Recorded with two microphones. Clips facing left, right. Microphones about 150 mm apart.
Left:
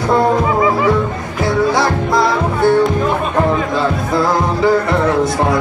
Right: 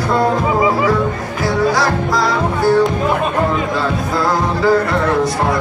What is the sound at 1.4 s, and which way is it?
Music, 25° left (ahead or behind).